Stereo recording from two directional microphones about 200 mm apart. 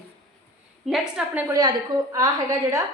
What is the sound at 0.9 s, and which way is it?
A woman's voice, centre (ahead or behind).